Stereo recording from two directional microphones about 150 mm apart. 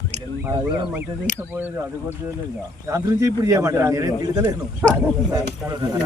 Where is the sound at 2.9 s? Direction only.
20° right (ahead or behind).